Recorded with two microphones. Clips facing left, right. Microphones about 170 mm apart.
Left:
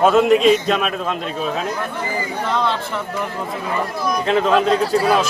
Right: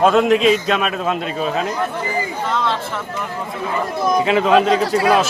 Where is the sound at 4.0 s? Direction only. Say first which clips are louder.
Right 7 dB; 25° right (ahead or behind).